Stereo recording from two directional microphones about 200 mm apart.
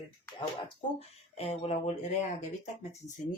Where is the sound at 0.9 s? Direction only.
30° left (ahead or behind).